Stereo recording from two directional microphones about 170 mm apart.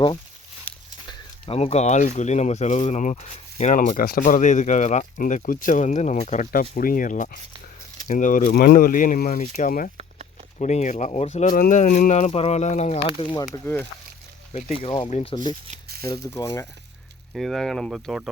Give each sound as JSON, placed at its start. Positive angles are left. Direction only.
{"t": 0.7, "sound": "walk", "side_deg": 10}
{"t": 1.0, "sound": "speech", "side_deg": 35}
{"t": 10.6, "sound": "speech", "side_deg": 45}
{"t": 13.1, "sound": "speech", "side_deg": 25}
{"t": 13.5, "sound": "speech", "side_deg": 10}
{"t": 14.5, "sound": "speech", "side_deg": 35}
{"t": 16.0, "sound": "speech", "side_deg": 20}
{"t": 17.3, "sound": "speech", "side_deg": 0}